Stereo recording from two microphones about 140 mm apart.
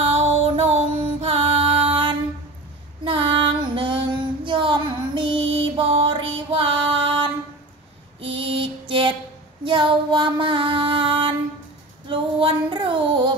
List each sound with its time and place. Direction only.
0.0 s music: 45° right (ahead or behind)
3.0 s female singing: 35° right (ahead or behind)
8.2 s mantra: 40° right (ahead or behind)
9.7 s music: 35° right (ahead or behind)
12.1 s female singing: 35° right (ahead or behind)